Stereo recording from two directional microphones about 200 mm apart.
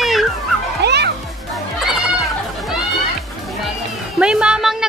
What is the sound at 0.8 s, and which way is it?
Music, 55° right (ahead or behind).